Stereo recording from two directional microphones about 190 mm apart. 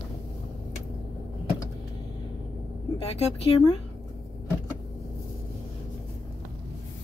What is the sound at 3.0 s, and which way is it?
Speech, 35° left (ahead or behind).